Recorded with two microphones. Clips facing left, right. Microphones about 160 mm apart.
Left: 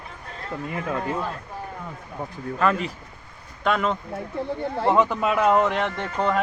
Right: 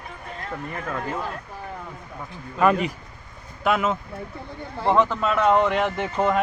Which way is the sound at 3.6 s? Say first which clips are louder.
Right 1 dB; 5° right (ahead or behind).